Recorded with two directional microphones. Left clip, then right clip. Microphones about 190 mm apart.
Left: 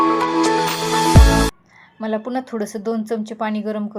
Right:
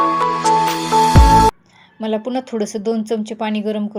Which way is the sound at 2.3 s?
20° right (ahead or behind).